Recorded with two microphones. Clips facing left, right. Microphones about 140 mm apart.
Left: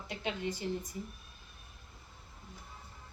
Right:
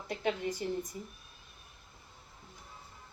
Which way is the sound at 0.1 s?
45° right (ahead or behind).